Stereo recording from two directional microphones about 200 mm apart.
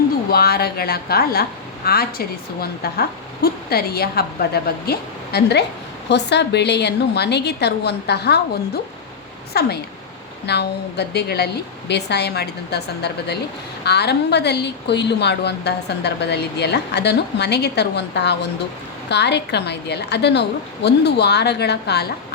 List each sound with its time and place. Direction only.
0.3 s a woman's voice: 50° left (ahead or behind)